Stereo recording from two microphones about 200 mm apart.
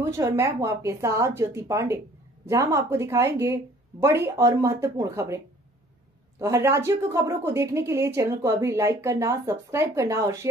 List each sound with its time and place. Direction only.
0.0 s a woman's voice: 15° right (ahead or behind)
6.4 s a woman's voice: 15° right (ahead or behind)